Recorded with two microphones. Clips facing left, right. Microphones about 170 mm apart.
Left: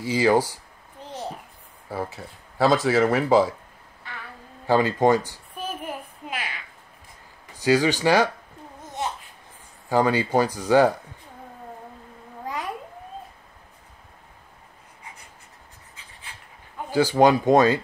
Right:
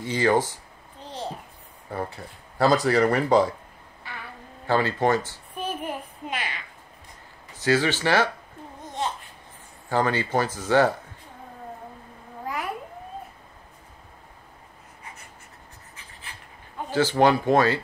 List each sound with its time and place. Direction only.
0.0 s speech: 10° left (ahead or behind)
1.9 s speech: centre (ahead or behind)
4.1 s a sound: 5° right (ahead or behind)
4.6 s speech: 15° left (ahead or behind)
5.6 s a sound: centre (ahead or behind)
7.5 s speech: 15° left (ahead or behind)
9.8 s speech: 10° left (ahead or behind)
16.9 s speech: 15° left (ahead or behind)